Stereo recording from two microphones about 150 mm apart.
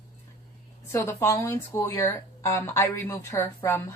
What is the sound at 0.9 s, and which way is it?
A woman's voice, 15° left (ahead or behind).